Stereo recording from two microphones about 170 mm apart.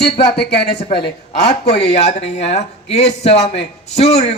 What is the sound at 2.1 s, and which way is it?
Speech, 40° left (ahead or behind).